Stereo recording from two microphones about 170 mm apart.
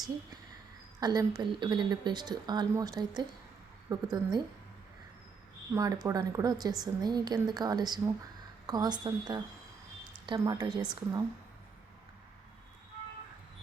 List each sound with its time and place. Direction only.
0.9 s speech: 20° right (ahead or behind)
5.7 s speech: 20° right (ahead or behind)